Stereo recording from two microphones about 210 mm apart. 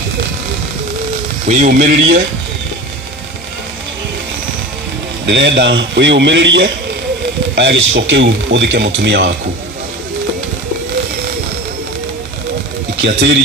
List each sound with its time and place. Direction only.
1.5 s speech: 40° right (ahead or behind)
5.2 s a man's voice: 60° right (ahead or behind)
13.0 s speech: 55° right (ahead or behind)